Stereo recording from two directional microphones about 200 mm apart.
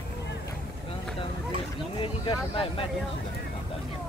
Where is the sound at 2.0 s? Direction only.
25° left (ahead or behind).